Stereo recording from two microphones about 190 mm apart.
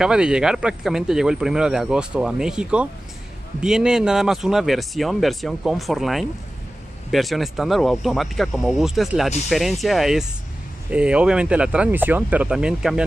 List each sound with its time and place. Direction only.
0.0 s speech: 5° right (ahead or behind)